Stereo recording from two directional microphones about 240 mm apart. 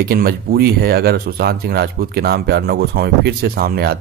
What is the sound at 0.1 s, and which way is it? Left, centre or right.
Speech, right.